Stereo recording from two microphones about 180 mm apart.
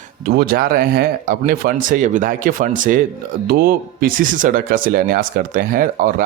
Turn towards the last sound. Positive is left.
turn(degrees=-50)  # may be behind; listen again after turning